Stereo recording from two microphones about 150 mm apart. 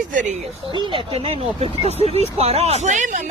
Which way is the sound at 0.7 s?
35° right (ahead or behind).